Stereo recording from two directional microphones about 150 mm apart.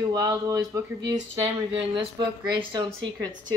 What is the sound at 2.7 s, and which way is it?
Speech, 30° right (ahead or behind).